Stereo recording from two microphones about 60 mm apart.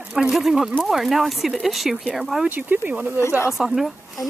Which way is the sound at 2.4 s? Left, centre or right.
Right.